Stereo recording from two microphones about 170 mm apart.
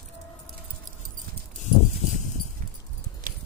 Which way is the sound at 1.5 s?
45° left (ahead or behind).